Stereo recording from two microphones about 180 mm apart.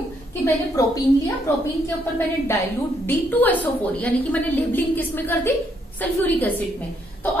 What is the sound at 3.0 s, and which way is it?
A woman's voice, 10° left (ahead or behind).